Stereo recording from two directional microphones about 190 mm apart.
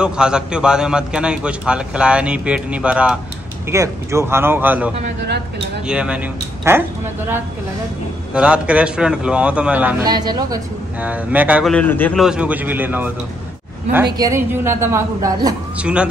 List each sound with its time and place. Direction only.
0.0 s a man's voice: 5° right (ahead or behind)
8.3 s a man's voice: 5° right (ahead or behind)
10.0 s speech: 20° right (ahead or behind)
11.0 s a woman's voice: 10° right (ahead or behind)
11.7 s a man's voice: 10° left (ahead or behind)
12.2 s a woman's voice: 5° right (ahead or behind)
14.1 s a woman's voice: 15° right (ahead or behind)
15.8 s a man's voice: 5° right (ahead or behind)